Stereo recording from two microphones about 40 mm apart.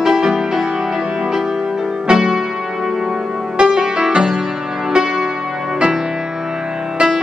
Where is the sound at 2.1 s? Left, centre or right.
Centre.